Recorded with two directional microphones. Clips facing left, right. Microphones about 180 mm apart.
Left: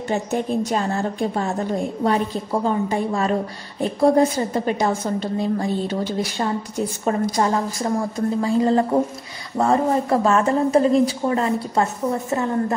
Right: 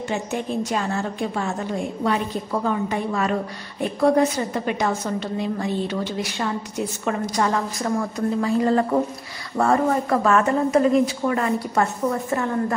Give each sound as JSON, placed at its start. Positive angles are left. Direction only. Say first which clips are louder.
{"t": 0.1, "sound": "a woman's voice", "louder": "left 4 dB", "side_deg": 35}